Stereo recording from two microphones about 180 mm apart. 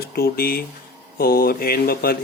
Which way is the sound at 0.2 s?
55° left (ahead or behind).